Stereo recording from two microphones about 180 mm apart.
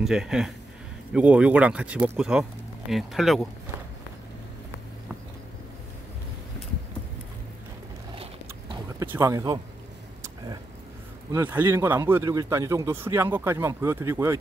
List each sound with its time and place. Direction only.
0.0 s speech: 5° right (ahead or behind)
9.0 s speech: 15° right (ahead or behind)
11.3 s speech: 10° right (ahead or behind)